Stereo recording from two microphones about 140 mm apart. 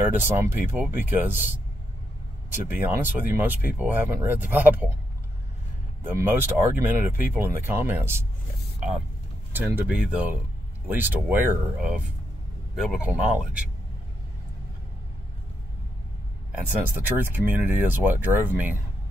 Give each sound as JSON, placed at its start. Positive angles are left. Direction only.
{"t": 0.0, "sound": "speech", "side_deg": -15}
{"t": 2.6, "sound": "speech", "side_deg": -15}
{"t": 6.0, "sound": "speech", "side_deg": -15}
{"t": 9.5, "sound": "speech", "side_deg": -15}
{"t": 16.9, "sound": "speech", "side_deg": -15}